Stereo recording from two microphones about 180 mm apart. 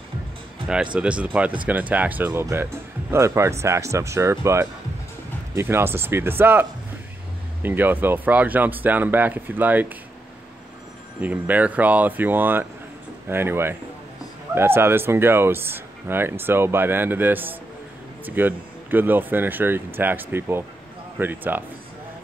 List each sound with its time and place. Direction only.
0.9 s speech: 5° right (ahead or behind)
11.1 s speech: 10° right (ahead or behind)